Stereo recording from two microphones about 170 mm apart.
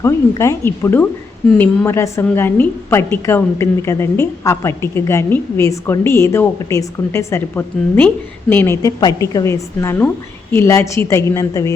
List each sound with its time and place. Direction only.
0.0 s a woman's voice: 15° left (ahead or behind)